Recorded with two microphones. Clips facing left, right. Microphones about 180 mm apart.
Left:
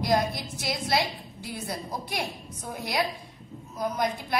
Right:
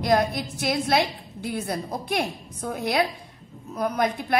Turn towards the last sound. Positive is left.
turn(degrees=-60)  # may be behind; listen again after turning